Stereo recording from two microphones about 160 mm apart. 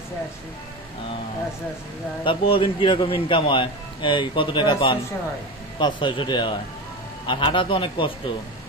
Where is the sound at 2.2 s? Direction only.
35° left (ahead or behind).